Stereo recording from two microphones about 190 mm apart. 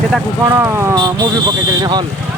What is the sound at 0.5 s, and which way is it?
Speech, 15° right (ahead or behind).